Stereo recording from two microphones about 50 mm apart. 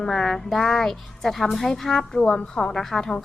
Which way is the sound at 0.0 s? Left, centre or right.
Centre.